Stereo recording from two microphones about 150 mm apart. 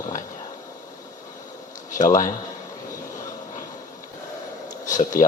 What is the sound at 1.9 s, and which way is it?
Speech, 60° left (ahead or behind).